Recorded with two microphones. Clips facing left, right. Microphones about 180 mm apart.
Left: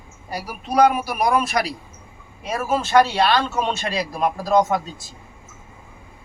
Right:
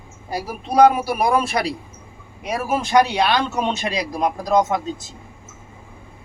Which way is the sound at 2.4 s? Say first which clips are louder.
Even; 15° right (ahead or behind).